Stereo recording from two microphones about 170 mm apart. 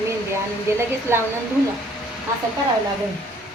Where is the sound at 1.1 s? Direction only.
15° right (ahead or behind).